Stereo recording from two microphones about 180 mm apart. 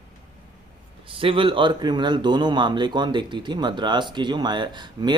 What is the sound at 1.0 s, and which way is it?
Speech, 30° right (ahead or behind).